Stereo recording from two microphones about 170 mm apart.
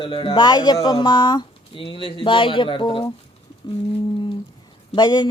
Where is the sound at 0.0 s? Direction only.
30° left (ahead or behind).